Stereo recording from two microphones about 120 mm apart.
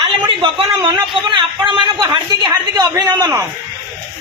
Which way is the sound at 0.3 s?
40° right (ahead or behind).